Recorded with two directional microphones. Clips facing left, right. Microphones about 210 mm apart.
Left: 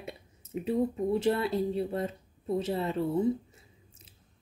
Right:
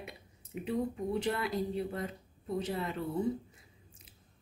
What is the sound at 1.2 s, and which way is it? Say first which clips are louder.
Speech: left 5 dB; 30° left (ahead or behind).